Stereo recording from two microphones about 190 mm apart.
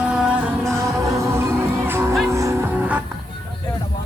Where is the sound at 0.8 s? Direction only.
15° right (ahead or behind).